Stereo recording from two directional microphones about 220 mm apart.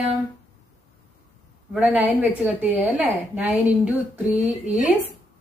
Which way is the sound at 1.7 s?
5° right (ahead or behind).